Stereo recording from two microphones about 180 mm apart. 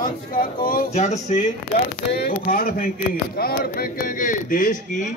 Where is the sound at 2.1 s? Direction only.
55° left (ahead or behind).